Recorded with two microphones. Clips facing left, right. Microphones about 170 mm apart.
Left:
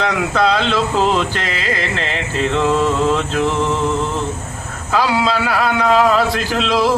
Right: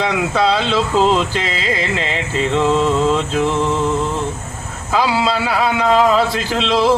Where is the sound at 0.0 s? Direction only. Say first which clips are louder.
Even; 10° right (ahead or behind).